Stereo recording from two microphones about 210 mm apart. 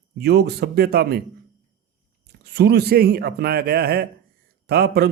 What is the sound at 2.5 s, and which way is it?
Speech, 50° right (ahead or behind).